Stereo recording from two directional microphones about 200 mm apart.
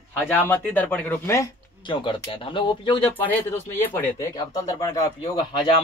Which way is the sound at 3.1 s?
10° left (ahead or behind).